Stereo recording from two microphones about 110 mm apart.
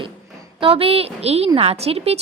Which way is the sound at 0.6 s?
60° right (ahead or behind).